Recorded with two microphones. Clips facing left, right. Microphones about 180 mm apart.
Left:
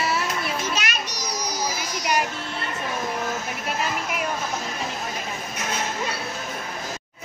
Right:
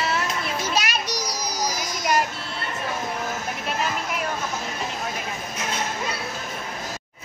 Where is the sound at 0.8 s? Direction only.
35° right (ahead or behind).